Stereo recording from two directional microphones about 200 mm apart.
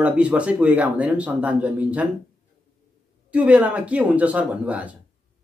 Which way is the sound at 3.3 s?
5° right (ahead or behind).